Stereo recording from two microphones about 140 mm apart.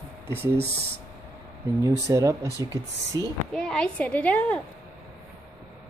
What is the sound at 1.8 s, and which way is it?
Speech, 20° right (ahead or behind).